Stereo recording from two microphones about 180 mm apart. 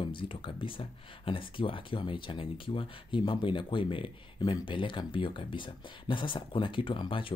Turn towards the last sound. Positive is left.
turn(degrees=30)  # may be behind; listen again after turning